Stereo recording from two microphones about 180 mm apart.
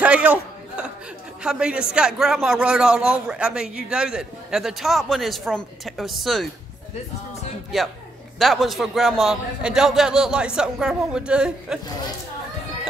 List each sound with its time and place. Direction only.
0.0 s a sound: 5° right (ahead or behind)
1.4 s a man's voice: 5° right (ahead or behind)
7.7 s a man's voice: centre (ahead or behind)